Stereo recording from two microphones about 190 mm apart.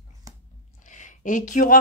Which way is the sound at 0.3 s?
20° right (ahead or behind).